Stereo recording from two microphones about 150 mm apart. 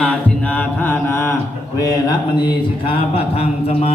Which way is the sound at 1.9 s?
30° left (ahead or behind).